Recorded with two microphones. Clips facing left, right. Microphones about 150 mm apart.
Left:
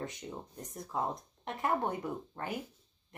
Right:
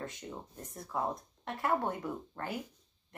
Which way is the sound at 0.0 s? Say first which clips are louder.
Left 1 dB; 15° left (ahead or behind).